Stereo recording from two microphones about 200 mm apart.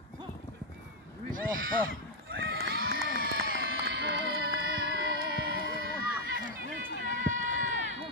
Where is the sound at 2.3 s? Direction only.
55° right (ahead or behind).